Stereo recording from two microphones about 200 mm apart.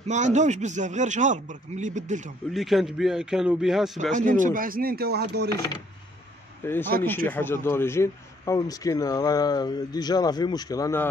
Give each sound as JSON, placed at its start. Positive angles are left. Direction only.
{"t": 0.0, "sound": "a man's voice", "side_deg": -35}
{"t": 2.5, "sound": "a man's voice", "side_deg": 0}
{"t": 4.1, "sound": "chopping", "side_deg": -40}
{"t": 6.6, "sound": "a man's voice", "side_deg": 10}